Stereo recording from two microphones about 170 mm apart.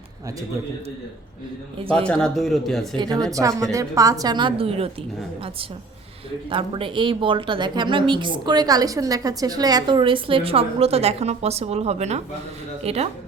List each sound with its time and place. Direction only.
1.9 s speech: 5° left (ahead or behind)
2.9 s a woman's voice: 25° right (ahead or behind)
6.5 s a woman's voice: 30° right (ahead or behind)